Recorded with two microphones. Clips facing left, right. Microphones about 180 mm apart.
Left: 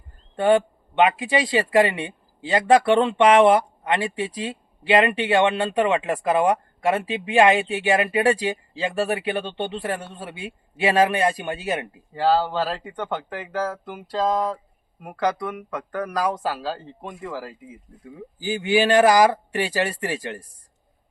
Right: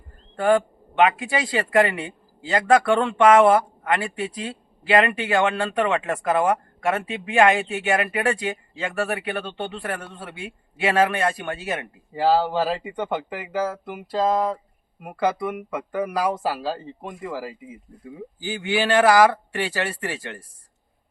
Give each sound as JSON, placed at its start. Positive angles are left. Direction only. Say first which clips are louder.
{"t": 0.3, "sound": "a man's voice", "louder": "left 1 dB", "side_deg": 25}
{"t": 12.1, "sound": "speech", "louder": "right 1 dB", "side_deg": -10}
{"t": 18.4, "sound": "a man's voice", "louder": "left 4 dB", "side_deg": 15}